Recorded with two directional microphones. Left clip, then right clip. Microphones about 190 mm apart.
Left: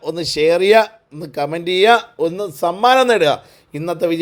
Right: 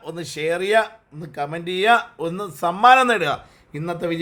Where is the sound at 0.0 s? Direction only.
30° left (ahead or behind).